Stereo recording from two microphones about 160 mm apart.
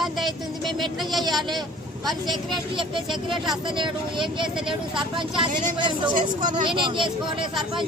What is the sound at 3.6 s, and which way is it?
Speech, 30° right (ahead or behind).